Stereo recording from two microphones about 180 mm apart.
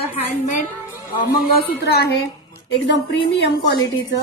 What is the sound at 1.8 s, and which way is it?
A woman's voice, 65° left (ahead or behind).